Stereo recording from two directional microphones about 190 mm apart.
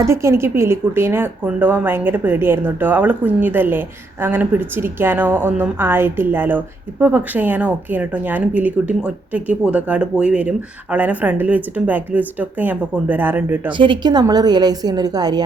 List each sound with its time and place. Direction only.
0.0 s speech: 15° right (ahead or behind)
13.7 s a woman's voice: 25° right (ahead or behind)